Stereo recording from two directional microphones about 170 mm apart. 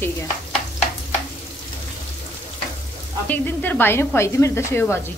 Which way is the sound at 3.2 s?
10° left (ahead or behind).